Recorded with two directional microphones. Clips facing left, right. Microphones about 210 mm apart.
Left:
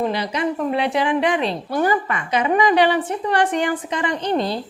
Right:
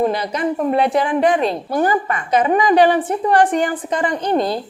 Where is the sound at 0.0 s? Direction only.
50° right (ahead or behind).